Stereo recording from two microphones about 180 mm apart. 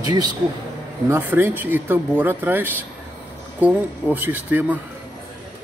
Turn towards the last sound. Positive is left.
turn(degrees=-10)  # may be behind; listen again after turning